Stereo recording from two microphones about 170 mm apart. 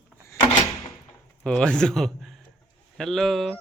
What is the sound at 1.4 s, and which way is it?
A man's voice, 5° left (ahead or behind).